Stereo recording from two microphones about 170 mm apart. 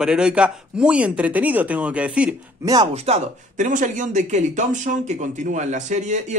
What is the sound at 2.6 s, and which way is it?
Speech, 20° right (ahead or behind).